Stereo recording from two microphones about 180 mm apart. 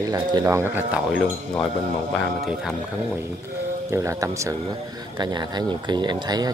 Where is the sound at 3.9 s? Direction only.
15° right (ahead or behind).